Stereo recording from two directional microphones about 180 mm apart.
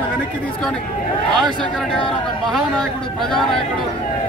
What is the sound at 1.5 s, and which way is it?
A man's voice, centre (ahead or behind).